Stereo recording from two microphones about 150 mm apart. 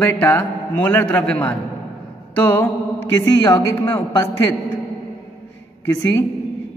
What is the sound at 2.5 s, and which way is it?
Mantra, 15° left (ahead or behind).